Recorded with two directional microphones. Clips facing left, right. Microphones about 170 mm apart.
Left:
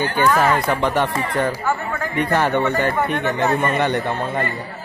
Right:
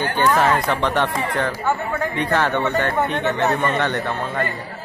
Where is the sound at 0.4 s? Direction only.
Centre (ahead or behind).